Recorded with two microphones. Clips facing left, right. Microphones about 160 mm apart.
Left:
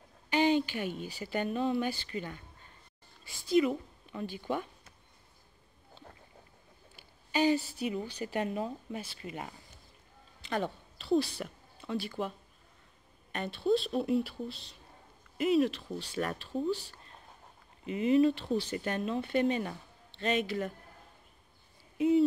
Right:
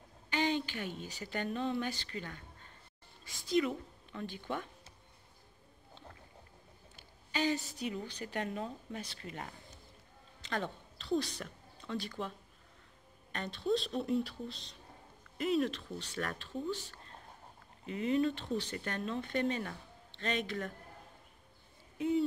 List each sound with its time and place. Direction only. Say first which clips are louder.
0.3 s speech: left 6 dB; 15° left (ahead or behind)
3.3 s speech: left 5 dB; 5° left (ahead or behind)
7.7 s a woman's voice: left 4 dB; 10° left (ahead or behind)
17.8 s speech: left 6 dB; 15° left (ahead or behind)
21.9 s owl: left 6 dB; 15° left (ahead or behind)